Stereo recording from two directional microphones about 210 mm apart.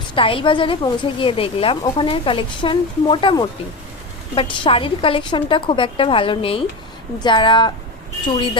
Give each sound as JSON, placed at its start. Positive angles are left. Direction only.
{"t": 0.1, "sound": "a woman's voice", "side_deg": 25}